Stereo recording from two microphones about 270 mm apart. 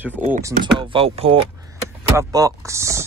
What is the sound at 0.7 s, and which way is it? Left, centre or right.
Speech, centre.